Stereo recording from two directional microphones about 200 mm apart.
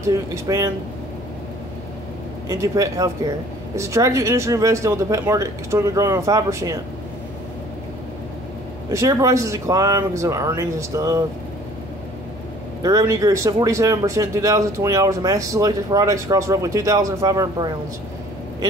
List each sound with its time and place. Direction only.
0.0 s speech: 15° right (ahead or behind)
2.4 s speech: 15° right (ahead or behind)
8.9 s speech: 15° right (ahead or behind)
12.8 s speech: 15° right (ahead or behind)